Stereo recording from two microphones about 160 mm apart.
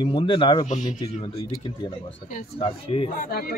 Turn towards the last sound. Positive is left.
turn(degrees=70)  # may be behind; listen again after turning